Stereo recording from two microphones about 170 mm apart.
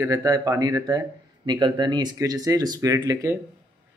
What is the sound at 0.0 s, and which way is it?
Speech, 20° right (ahead or behind).